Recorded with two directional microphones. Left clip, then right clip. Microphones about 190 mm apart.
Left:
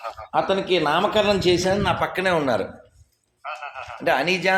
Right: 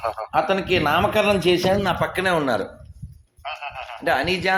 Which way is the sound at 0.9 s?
65° right (ahead or behind).